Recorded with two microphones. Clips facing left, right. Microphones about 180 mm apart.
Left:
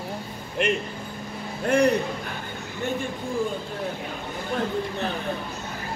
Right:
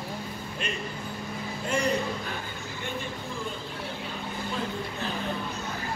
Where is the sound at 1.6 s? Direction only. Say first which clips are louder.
Left 9 dB; 60° left (ahead or behind).